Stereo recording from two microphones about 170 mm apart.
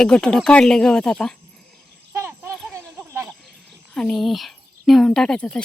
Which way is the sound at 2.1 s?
15° right (ahead or behind).